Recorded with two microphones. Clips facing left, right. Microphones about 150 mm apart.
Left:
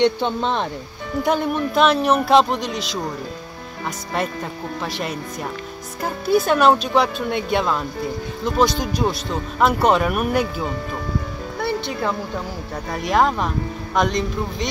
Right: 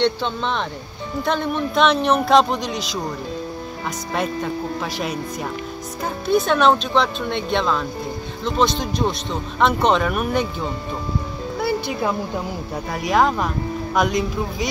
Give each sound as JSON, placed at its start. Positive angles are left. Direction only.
{"t": 0.0, "sound": "speech", "side_deg": 15}
{"t": 4.9, "sound": "speech", "side_deg": 0}
{"t": 11.6, "sound": "speech", "side_deg": -10}